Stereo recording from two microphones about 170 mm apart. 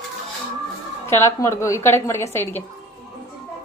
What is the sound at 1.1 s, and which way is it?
A woman's voice, 15° left (ahead or behind).